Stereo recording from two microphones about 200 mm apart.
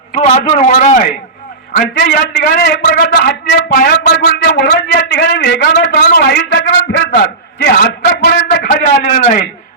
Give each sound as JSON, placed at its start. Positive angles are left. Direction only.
{"t": 0.1, "sound": "a man's voice", "side_deg": 35}
{"t": 1.7, "sound": "speech", "side_deg": 50}
{"t": 4.5, "sound": "a sound", "side_deg": 50}